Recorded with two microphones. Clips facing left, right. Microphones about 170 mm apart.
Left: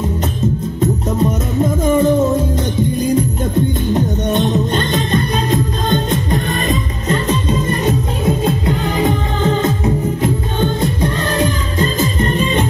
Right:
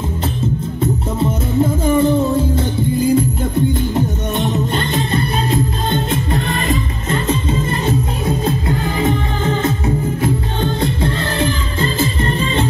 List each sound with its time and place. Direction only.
1.9 s music: 20° left (ahead or behind)
10.2 s music: 20° left (ahead or behind)